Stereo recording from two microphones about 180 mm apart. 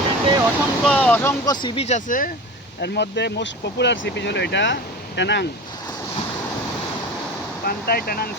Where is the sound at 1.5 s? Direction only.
30° left (ahead or behind); by 2.3 s 50° left (ahead or behind).